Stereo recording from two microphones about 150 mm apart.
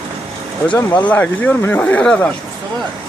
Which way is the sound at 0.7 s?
10° left (ahead or behind).